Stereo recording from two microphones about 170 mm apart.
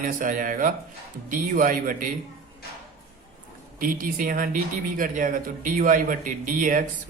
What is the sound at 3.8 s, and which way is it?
Speech, 55° right (ahead or behind).